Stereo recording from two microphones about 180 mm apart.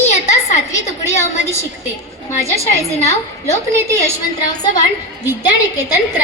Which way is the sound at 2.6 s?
15° right (ahead or behind).